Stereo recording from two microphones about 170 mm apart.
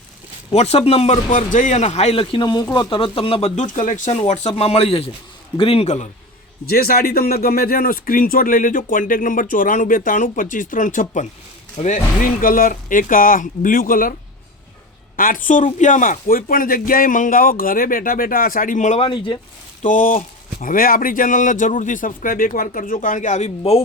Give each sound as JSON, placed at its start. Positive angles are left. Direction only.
{"t": 0.5, "sound": "speech", "side_deg": 40}
{"t": 6.7, "sound": "speech", "side_deg": 60}
{"t": 11.8, "sound": "speech", "side_deg": 30}
{"t": 12.4, "sound": "speech", "side_deg": 55}
{"t": 15.1, "sound": "speech", "side_deg": 55}
{"t": 19.8, "sound": "speech", "side_deg": 50}